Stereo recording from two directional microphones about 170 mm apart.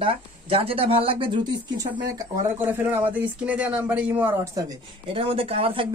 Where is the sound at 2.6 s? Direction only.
15° right (ahead or behind).